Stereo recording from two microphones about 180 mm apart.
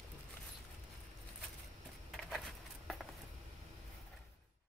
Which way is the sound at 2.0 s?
Centre (ahead or behind).